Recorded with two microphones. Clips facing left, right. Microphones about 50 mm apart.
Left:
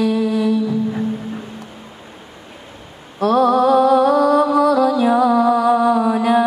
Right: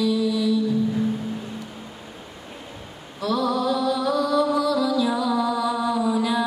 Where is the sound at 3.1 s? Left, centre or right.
Left.